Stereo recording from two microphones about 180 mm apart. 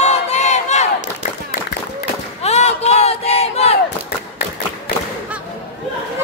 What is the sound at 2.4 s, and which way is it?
Crowd, 35° left (ahead or behind).